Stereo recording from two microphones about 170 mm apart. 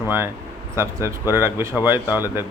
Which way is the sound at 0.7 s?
15° right (ahead or behind).